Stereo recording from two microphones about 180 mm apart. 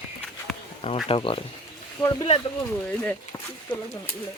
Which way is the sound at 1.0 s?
30° left (ahead or behind).